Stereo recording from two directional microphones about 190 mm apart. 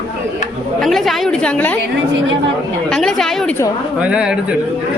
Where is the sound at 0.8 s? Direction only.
Centre (ahead or behind).